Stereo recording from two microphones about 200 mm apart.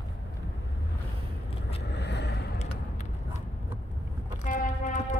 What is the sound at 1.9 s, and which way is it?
Vehicle, 55° left (ahead or behind).